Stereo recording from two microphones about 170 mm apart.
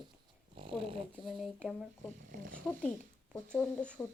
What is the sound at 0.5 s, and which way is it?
Dog, 30° right (ahead or behind).